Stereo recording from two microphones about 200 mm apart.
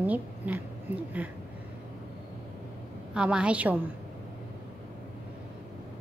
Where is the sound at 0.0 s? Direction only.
10° right (ahead or behind).